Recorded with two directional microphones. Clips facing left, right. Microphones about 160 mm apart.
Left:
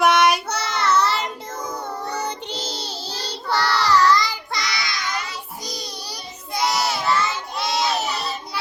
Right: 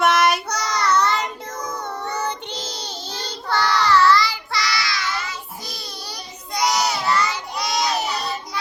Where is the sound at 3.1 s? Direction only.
30° left (ahead or behind).